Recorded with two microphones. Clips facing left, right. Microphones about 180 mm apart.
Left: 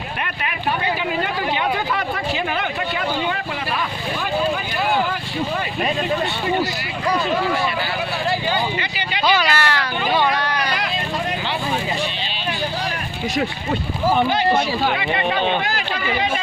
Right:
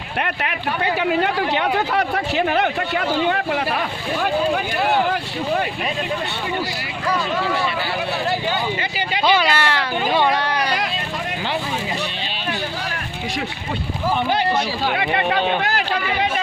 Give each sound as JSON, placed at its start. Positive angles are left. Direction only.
{"t": 0.9, "sound": "speech", "side_deg": -65}
{"t": 9.2, "sound": "a sound", "side_deg": -25}
{"t": 14.9, "sound": "speech", "side_deg": -60}